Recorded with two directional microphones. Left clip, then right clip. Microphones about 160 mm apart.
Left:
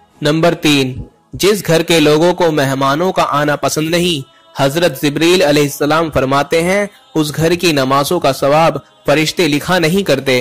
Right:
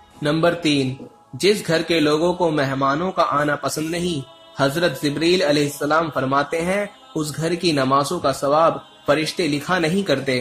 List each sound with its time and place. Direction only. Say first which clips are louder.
0.2 s a man's voice: left 6 dB; 45° left (ahead or behind)